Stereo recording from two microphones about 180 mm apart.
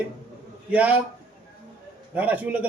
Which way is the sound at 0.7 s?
10° right (ahead or behind).